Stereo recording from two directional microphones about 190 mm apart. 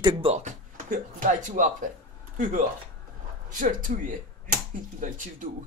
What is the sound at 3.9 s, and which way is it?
Speech, 40° right (ahead or behind).